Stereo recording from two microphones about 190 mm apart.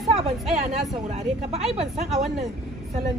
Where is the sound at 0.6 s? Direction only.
35° right (ahead or behind).